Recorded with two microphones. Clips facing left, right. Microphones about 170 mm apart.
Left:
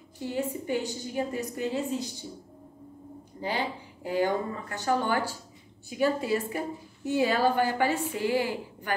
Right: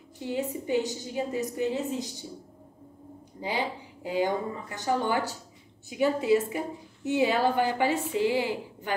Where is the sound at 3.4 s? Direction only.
15° right (ahead or behind).